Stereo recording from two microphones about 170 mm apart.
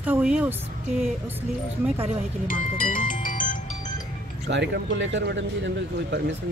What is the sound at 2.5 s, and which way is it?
Speech, 55° left (ahead or behind).